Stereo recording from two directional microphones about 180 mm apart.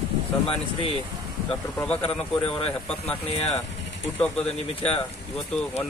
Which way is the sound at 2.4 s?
30° left (ahead or behind).